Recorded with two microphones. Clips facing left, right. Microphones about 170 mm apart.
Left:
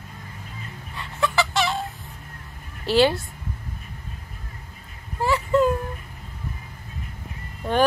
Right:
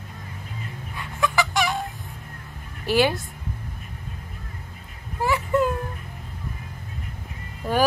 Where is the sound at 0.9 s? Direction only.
15° right (ahead or behind).